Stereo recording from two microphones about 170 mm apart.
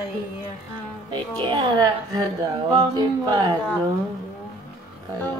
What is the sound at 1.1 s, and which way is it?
Speech, 30° right (ahead or behind).